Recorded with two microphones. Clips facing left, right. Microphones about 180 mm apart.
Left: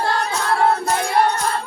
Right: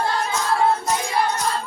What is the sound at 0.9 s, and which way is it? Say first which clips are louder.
Music: left 4 dB; 60° left (ahead or behind).